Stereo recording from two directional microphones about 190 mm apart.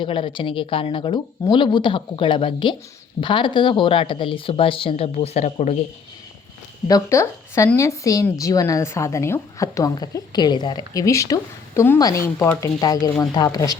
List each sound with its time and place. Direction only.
0.0 s a woman's voice: 25° left (ahead or behind)
6.8 s speech: 15° left (ahead or behind)